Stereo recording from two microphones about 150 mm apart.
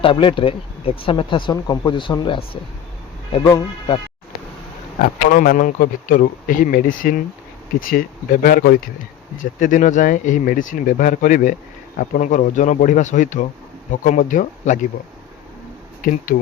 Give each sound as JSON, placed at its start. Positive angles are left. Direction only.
{"t": 0.0, "sound": "speech", "side_deg": 35}
{"t": 4.9, "sound": "speech", "side_deg": 65}
{"t": 9.4, "sound": "speech", "side_deg": 60}
{"t": 16.0, "sound": "speech", "side_deg": 65}